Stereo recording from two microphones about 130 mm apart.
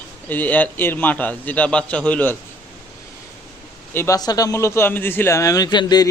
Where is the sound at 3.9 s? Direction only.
25° left (ahead or behind).